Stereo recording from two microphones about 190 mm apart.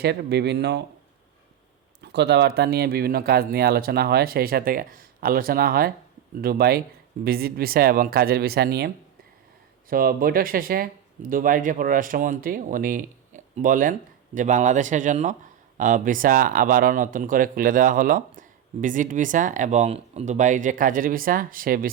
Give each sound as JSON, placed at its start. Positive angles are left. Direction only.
{"t": 0.0, "sound": "speech", "side_deg": -60}
{"t": 2.0, "sound": "speech", "side_deg": -60}
{"t": 9.9, "sound": "speech", "side_deg": -50}